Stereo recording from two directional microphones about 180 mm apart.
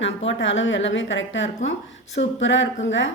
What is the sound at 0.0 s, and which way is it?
A woman's voice, 90° left.